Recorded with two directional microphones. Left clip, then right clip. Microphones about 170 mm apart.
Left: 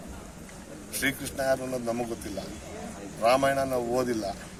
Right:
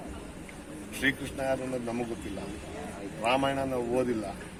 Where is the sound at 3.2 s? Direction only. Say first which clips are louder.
Left 5 dB; 15° left (ahead or behind).